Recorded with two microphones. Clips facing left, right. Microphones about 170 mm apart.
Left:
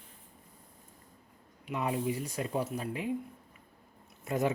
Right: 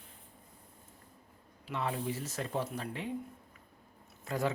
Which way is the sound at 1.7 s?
15° left (ahead or behind).